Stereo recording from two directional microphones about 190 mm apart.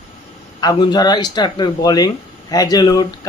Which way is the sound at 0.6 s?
20° left (ahead or behind).